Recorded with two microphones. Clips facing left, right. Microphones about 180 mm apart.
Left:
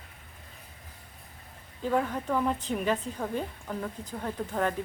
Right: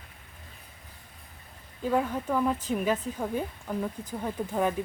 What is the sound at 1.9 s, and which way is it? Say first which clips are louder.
A woman's voice: right 1 dB; 5° right (ahead or behind).